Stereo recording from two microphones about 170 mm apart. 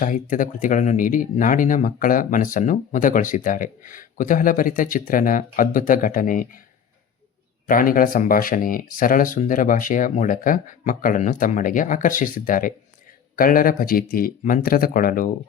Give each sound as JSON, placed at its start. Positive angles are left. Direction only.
{"t": 0.0, "sound": "speech", "side_deg": 50}
{"t": 7.7, "sound": "speech", "side_deg": 55}